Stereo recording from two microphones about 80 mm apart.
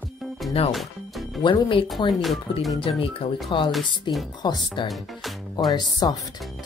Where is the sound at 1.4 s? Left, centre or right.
Left.